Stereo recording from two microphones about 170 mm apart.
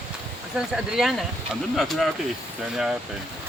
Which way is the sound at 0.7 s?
Centre (ahead or behind).